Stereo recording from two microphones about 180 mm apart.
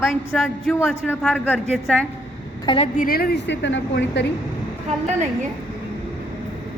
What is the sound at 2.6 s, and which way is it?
Speech, 35° left (ahead or behind).